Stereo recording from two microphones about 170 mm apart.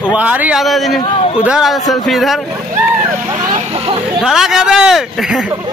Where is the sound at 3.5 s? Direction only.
35° right (ahead or behind).